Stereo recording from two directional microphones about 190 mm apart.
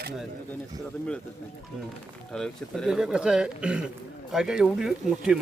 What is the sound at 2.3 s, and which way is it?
Speech, 5° left (ahead or behind).